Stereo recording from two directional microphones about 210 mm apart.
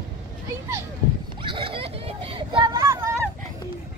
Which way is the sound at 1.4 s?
25° right (ahead or behind).